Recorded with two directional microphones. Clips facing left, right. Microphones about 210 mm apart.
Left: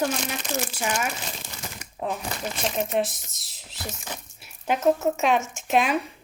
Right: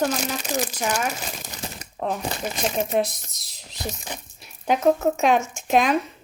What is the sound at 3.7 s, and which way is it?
Speech, 20° right (ahead or behind).